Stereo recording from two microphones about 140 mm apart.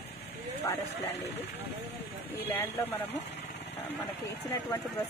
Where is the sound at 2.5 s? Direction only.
15° left (ahead or behind).